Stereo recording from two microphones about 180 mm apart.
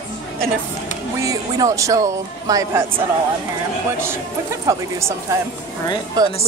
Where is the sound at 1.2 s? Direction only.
20° right (ahead or behind).